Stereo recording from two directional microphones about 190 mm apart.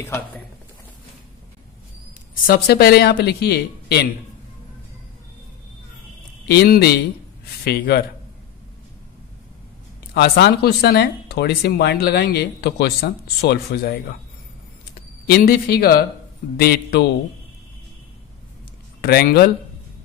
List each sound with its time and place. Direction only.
2.4 s speech: 50° left (ahead or behind)
6.4 s speech: 55° left (ahead or behind)
10.1 s speech: 60° left (ahead or behind)
15.2 s speech: 50° left (ahead or behind)
18.9 s speech: 55° left (ahead or behind)